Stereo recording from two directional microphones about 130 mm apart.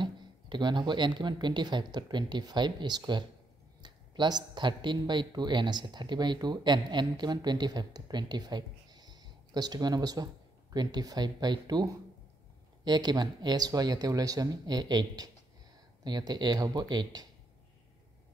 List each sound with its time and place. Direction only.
0.0 s a man's voice: 35° right (ahead or behind)